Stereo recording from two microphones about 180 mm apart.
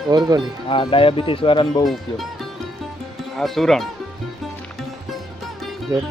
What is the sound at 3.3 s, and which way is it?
Speech, centre (ahead or behind).